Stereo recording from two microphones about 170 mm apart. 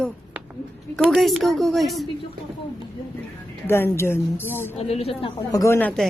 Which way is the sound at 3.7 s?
15° left (ahead or behind).